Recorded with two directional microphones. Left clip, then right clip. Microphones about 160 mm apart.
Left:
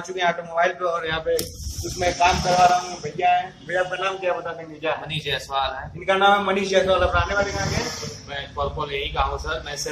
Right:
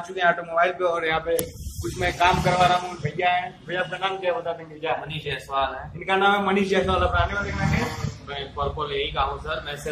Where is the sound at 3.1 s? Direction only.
15° right (ahead or behind).